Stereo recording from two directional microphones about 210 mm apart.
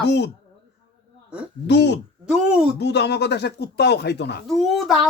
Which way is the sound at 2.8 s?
55° left (ahead or behind).